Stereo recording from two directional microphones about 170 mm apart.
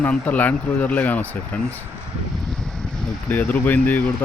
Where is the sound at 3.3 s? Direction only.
10° left (ahead or behind).